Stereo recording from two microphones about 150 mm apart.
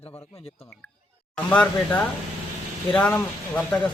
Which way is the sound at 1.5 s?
10° left (ahead or behind).